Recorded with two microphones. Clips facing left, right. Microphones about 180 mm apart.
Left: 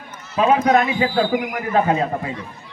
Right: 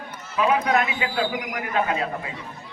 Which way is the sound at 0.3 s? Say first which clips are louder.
Left 5 dB; 30° left (ahead or behind).